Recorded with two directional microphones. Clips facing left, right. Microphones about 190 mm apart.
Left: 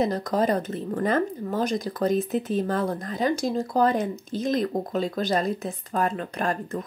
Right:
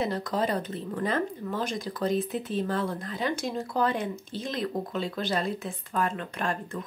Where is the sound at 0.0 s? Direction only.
40° left (ahead or behind).